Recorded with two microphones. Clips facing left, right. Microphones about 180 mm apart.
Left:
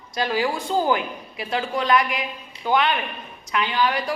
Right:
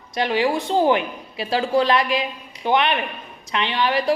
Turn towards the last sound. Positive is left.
turn(degrees=-25)  # may be behind; listen again after turning